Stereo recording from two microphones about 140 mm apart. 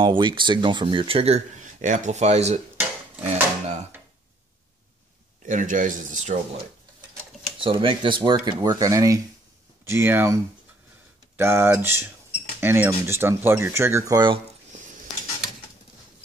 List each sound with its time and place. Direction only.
0.0 s speech: 35° right (ahead or behind); by 3.8 s 55° right (ahead or behind)
5.4 s speech: 65° right (ahead or behind)
7.6 s speech: 35° right (ahead or behind)